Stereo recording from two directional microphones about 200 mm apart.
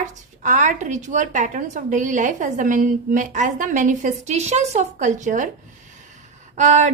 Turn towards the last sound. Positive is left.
turn(degrees=-35)  # may be behind; listen again after turning